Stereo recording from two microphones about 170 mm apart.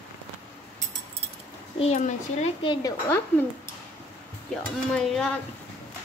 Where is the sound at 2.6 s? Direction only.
25° left (ahead or behind).